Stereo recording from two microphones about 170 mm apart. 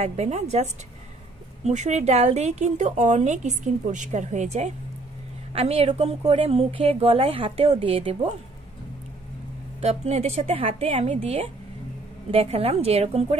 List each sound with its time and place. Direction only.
0.0 s a woman's voice: 40° right (ahead or behind)
9.8 s a woman's voice: 40° right (ahead or behind)